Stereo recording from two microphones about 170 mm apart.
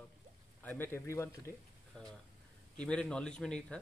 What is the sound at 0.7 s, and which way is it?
Speech, 10° left (ahead or behind).